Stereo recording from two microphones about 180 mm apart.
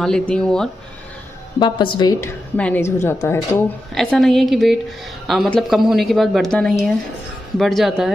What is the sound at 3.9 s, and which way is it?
A woman's voice, centre (ahead or behind).